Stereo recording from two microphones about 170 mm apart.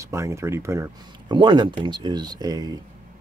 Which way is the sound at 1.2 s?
30° right (ahead or behind).